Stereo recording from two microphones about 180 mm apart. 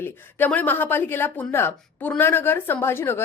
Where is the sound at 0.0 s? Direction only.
10° left (ahead or behind).